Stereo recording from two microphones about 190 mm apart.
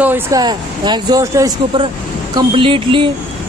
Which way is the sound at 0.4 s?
20° right (ahead or behind).